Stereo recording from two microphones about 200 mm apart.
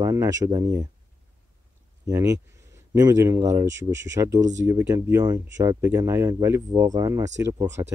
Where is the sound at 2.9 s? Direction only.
15° right (ahead or behind).